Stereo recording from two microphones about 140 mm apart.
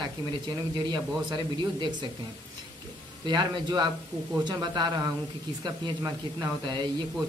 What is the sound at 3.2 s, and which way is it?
Speech, 30° right (ahead or behind).